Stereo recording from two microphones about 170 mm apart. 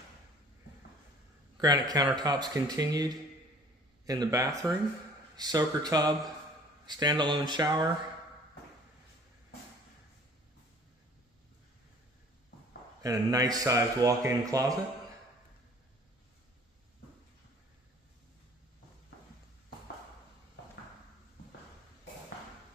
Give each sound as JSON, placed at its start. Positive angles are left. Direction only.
{"t": 1.6, "sound": "a man's voice", "side_deg": -25}
{"t": 13.0, "sound": "a man's voice", "side_deg": -20}